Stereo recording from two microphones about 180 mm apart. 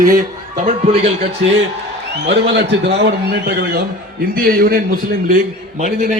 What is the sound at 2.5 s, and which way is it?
A man's voice, 70° right (ahead or behind).